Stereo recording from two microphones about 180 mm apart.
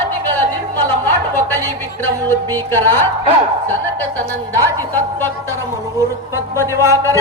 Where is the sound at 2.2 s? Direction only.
10° left (ahead or behind).